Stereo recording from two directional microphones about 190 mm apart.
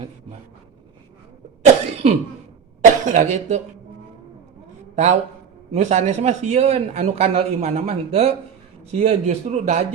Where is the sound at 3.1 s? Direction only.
40° right (ahead or behind).